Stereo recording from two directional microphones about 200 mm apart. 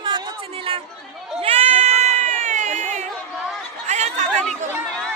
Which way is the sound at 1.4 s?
30° right (ahead or behind).